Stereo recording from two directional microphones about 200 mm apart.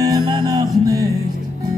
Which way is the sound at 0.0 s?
20° right (ahead or behind).